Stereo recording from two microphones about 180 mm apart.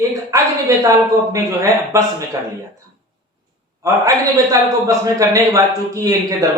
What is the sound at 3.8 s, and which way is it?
A man's voice, 20° right (ahead or behind).